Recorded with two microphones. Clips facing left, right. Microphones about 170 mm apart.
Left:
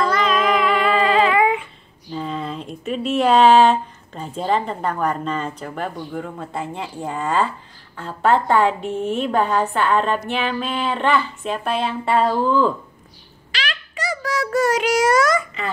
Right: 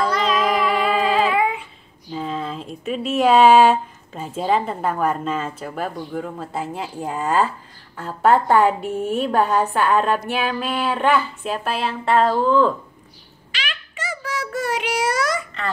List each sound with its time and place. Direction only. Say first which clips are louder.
0.1 s music: left 1 dB; 55° left (ahead or behind)
0.5 s music: left 1 dB; 5° right (ahead or behind)
1.3 s a sound: left 3 dB; 60° left (ahead or behind)
2.0 s speech: even; centre (ahead or behind)
13.5 s a sound: left 4 dB; 35° left (ahead or behind)
14.6 s child singing: left 5 dB; 40° left (ahead or behind)